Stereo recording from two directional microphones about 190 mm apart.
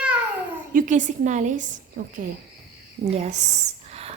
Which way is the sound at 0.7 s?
45° right (ahead or behind).